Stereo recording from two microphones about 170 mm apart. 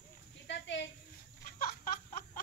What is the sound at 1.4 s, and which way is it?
Chicken, 55° left (ahead or behind).